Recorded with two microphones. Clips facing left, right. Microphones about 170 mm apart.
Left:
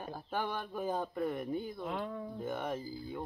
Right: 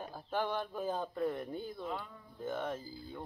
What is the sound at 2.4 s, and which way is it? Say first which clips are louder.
Speech: right 1 dB; 15° left (ahead or behind).